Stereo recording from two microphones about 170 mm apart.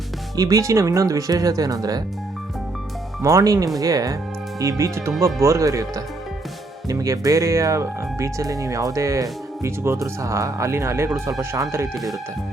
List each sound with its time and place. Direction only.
0.3 s speech: 20° right (ahead or behind)
3.2 s speech: 20° right (ahead or behind)